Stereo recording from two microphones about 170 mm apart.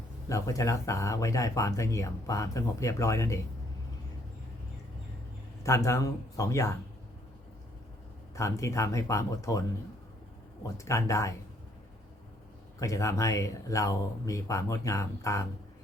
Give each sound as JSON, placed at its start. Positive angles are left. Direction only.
{"t": 0.3, "sound": "speech", "side_deg": 20}
{"t": 5.6, "sound": "speech", "side_deg": 20}
{"t": 8.4, "sound": "speech", "side_deg": 20}
{"t": 12.8, "sound": "speech", "side_deg": 20}